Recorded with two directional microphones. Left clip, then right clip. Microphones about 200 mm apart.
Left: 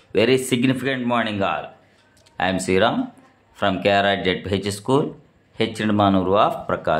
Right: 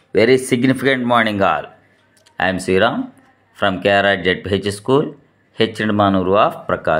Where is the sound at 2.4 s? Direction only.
10° right (ahead or behind).